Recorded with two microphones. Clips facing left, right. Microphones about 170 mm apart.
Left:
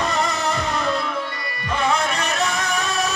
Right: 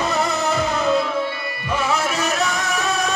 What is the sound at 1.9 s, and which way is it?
Music, centre (ahead or behind).